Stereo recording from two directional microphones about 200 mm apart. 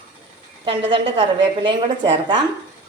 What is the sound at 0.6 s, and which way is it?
A woman's voice, 25° right (ahead or behind).